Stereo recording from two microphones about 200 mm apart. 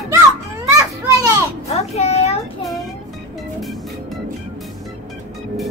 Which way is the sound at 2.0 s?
30° left (ahead or behind).